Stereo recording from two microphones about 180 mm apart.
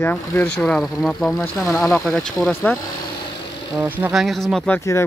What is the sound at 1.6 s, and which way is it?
Speech, 10° left (ahead or behind).